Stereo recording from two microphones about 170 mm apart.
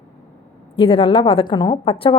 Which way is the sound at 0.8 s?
30° left (ahead or behind).